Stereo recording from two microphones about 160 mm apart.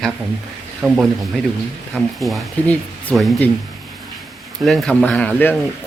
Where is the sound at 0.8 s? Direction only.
5° right (ahead or behind).